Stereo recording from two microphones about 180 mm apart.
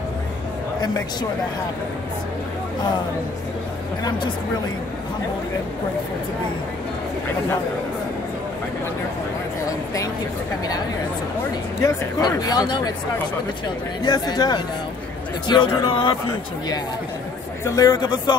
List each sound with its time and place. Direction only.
0.7 s speech: 20° left (ahead or behind)
11.8 s speech: 20° left (ahead or behind)
14.0 s speech: 20° left (ahead or behind)
17.6 s speech: 20° left (ahead or behind)